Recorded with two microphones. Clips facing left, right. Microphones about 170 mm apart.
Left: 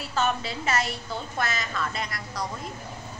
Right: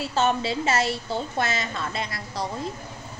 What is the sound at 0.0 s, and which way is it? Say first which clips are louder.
A woman's voice: right 4 dB; 30° right (ahead or behind).